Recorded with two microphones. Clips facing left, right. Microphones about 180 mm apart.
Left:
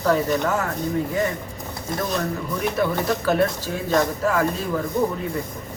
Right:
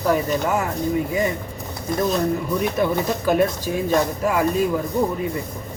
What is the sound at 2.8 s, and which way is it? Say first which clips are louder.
Speech: right 1 dB; 20° right (ahead or behind).